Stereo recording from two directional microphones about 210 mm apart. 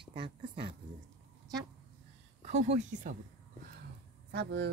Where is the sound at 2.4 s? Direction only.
35° right (ahead or behind).